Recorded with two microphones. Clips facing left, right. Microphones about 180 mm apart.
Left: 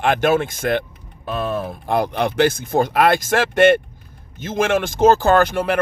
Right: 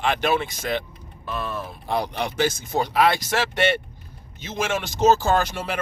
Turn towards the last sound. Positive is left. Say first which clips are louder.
# left 7 dB
turn(degrees=55)  # may be behind; listen again after turning